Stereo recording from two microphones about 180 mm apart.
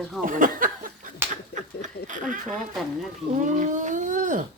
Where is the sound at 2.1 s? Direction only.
45° right (ahead or behind).